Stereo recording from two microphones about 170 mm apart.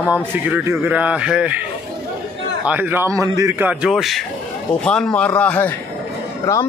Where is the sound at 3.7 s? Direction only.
5° right (ahead or behind).